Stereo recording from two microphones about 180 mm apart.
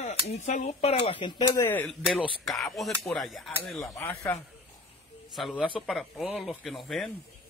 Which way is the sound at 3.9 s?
15° left (ahead or behind).